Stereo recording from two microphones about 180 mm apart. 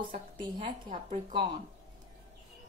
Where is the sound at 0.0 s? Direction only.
25° right (ahead or behind).